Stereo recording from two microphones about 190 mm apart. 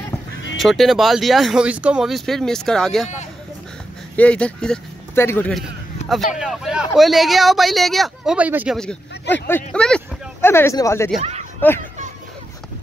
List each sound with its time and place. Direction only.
0.6 s speech: centre (ahead or behind)
4.2 s speech: 5° left (ahead or behind)
5.5 s a man's voice: centre (ahead or behind)
9.3 s speech: 5° left (ahead or behind)
11.1 s a sound: 35° right (ahead or behind)